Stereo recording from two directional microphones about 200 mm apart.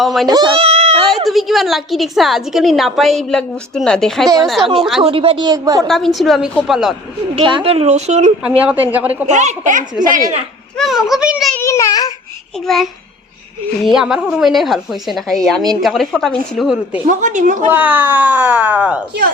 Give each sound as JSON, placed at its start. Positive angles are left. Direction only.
{"t": 0.0, "sound": "a woman's voice", "side_deg": 0}
{"t": 0.3, "sound": "speech", "side_deg": -20}
{"t": 1.1, "sound": "a woman's voice", "side_deg": 0}
{"t": 5.0, "sound": "a woman's voice", "side_deg": -25}
{"t": 6.1, "sound": "a woman's voice", "side_deg": 0}
{"t": 7.3, "sound": "speech", "side_deg": -25}
{"t": 8.4, "sound": "speech", "side_deg": -10}
{"t": 9.2, "sound": "speech", "side_deg": -35}
{"t": 10.8, "sound": "a woman's voice", "side_deg": 0}
{"t": 11.5, "sound": "a child's voice", "side_deg": 15}
{"t": 12.6, "sound": "a woman's voice", "side_deg": 0}
{"t": 17.1, "sound": "speech", "side_deg": -40}
{"t": 17.7, "sound": "speech", "side_deg": -10}